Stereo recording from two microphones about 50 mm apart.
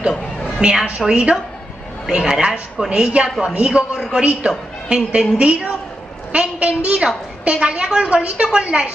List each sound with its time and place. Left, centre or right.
0.6 s a woman's voice: centre